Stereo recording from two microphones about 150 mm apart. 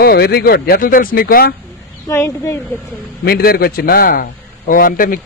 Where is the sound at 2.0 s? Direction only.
20° left (ahead or behind).